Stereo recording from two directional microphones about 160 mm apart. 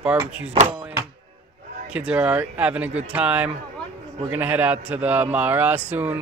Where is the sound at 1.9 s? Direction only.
10° right (ahead or behind).